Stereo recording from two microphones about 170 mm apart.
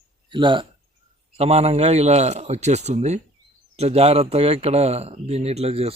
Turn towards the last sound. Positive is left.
turn(degrees=-35)  # may be behind; listen again after turning